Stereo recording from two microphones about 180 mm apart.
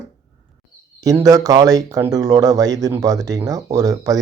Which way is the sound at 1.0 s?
20° right (ahead or behind).